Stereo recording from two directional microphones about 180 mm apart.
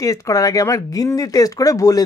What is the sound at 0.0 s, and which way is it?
Speech, 20° left (ahead or behind).